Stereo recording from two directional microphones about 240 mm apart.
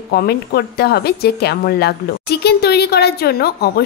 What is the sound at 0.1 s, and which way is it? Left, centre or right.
A woman's voice, left.